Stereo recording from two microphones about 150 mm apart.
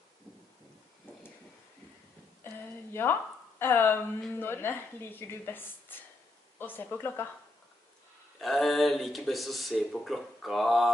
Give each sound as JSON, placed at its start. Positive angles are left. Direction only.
{"t": 2.9, "sound": "speech", "side_deg": 15}
{"t": 8.4, "sound": "speech", "side_deg": 0}